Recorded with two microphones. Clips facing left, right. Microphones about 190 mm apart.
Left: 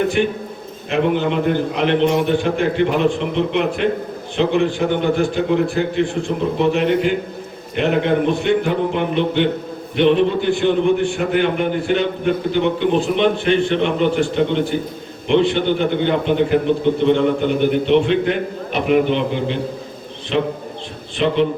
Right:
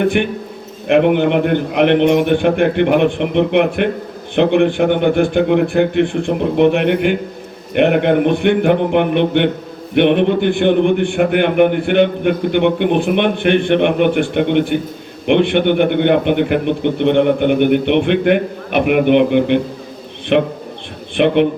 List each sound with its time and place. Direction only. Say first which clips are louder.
0.0 s a man's voice: right 2 dB; 60° right (ahead or behind)